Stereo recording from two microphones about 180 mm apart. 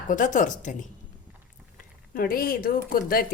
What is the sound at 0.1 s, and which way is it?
Speech, 45° left (ahead or behind).